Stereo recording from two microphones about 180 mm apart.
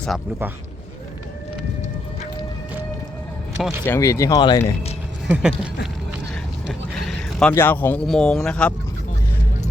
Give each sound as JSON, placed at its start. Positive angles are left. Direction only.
{"t": 3.8, "sound": "speech", "side_deg": 15}
{"t": 5.3, "sound": "speech", "side_deg": -5}
{"t": 7.0, "sound": "a sound", "side_deg": 0}
{"t": 7.5, "sound": "speech", "side_deg": 10}